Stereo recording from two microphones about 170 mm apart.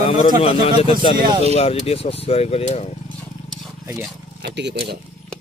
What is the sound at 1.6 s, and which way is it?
Speech, 35° left (ahead or behind).